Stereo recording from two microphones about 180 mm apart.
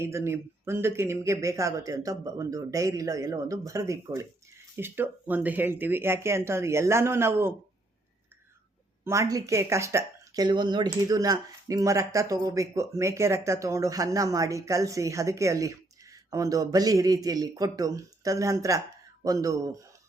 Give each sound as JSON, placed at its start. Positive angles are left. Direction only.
{"t": 0.0, "sound": "speech", "side_deg": -15}
{"t": 9.0, "sound": "speech", "side_deg": -20}